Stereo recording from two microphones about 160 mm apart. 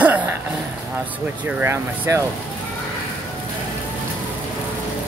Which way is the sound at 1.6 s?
15° right (ahead or behind).